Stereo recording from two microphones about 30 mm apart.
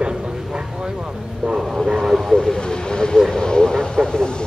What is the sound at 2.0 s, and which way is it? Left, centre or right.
Vehicle, centre.